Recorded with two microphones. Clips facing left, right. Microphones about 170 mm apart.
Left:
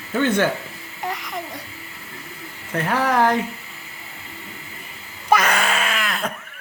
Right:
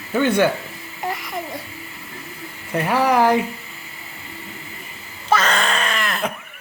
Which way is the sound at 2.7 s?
10° right (ahead or behind).